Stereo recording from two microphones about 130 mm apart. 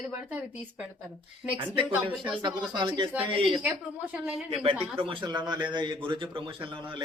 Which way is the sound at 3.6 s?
10° right (ahead or behind).